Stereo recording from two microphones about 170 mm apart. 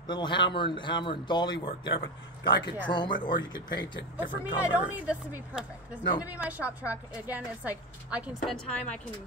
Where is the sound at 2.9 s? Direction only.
25° left (ahead or behind).